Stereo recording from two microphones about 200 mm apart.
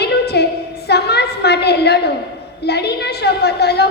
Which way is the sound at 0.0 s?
55° left (ahead or behind).